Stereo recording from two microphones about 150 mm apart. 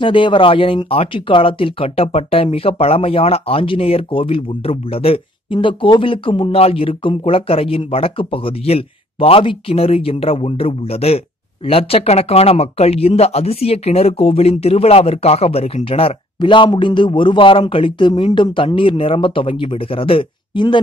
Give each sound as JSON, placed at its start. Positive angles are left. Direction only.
{"t": 0.0, "sound": "speech", "side_deg": 35}